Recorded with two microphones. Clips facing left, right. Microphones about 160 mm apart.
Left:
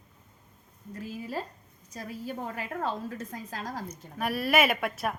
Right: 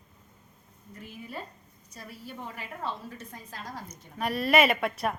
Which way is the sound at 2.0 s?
45° left (ahead or behind).